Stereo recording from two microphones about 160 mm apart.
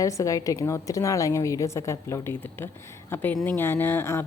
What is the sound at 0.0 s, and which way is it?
A woman's voice, 20° left (ahead or behind).